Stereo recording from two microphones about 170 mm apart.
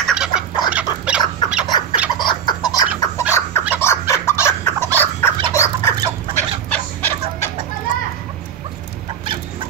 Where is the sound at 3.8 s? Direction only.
15° left (ahead or behind).